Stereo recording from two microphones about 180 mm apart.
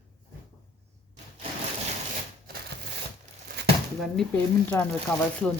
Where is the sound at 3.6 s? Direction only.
70° right (ahead or behind).